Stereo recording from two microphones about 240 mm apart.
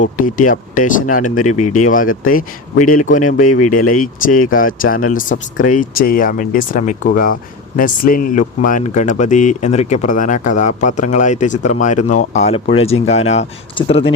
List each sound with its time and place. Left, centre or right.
0.0 s speech: left